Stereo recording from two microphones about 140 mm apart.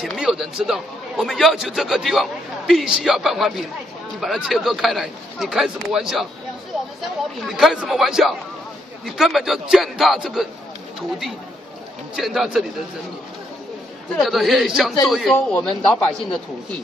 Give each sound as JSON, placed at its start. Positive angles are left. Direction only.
{"t": 0.0, "sound": "a man's voice", "side_deg": 0}
{"t": 14.2, "sound": "a man's voice", "side_deg": 0}